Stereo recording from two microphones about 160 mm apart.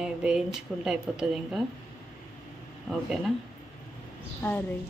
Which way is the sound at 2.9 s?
Centre (ahead or behind).